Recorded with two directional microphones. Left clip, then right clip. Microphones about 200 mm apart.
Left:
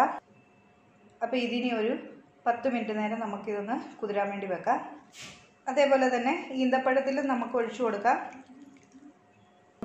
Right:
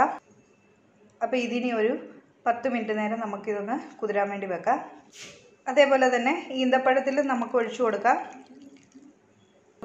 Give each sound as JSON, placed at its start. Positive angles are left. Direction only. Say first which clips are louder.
{"t": 1.2, "sound": "a woman's voice", "louder": "right 3 dB", "side_deg": -30}